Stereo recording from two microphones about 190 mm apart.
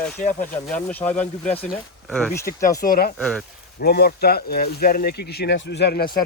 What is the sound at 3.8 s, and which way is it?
Speech, 55° left (ahead or behind).